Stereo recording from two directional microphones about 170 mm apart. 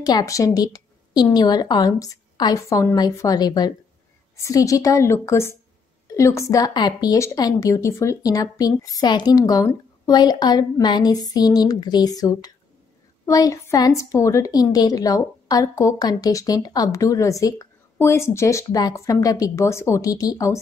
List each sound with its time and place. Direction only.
0.0 s a woman's voice: 20° left (ahead or behind)